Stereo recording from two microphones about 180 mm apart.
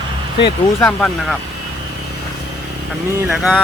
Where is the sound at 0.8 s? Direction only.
5° left (ahead or behind).